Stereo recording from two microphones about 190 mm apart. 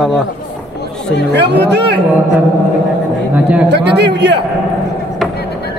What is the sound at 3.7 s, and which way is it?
Speech, 65° right (ahead or behind).